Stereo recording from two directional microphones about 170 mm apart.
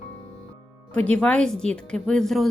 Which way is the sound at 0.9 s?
10° left (ahead or behind).